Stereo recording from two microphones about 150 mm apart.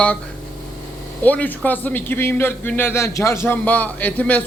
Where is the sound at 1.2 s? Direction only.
10° left (ahead or behind).